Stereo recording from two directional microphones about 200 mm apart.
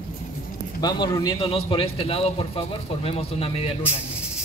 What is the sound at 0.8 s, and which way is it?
A man's voice, 20° left (ahead or behind).